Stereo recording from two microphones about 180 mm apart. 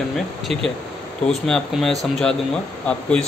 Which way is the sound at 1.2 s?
5° left (ahead or behind).